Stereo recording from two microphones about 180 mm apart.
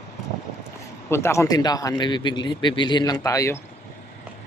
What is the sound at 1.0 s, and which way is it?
Speech, 15° left (ahead or behind).